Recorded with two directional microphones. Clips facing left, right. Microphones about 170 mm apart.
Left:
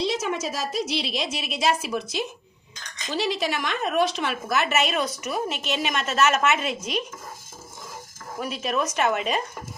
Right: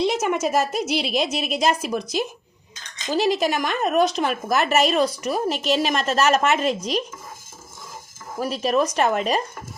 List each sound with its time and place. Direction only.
0.0 s speech: 55° right (ahead or behind)
1.5 s a woman's voice: 5° left (ahead or behind)
3.1 s a woman's voice: 45° right (ahead or behind)
8.4 s a woman's voice: 35° right (ahead or behind)